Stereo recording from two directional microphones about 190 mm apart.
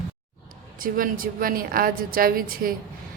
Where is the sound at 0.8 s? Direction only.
50° right (ahead or behind).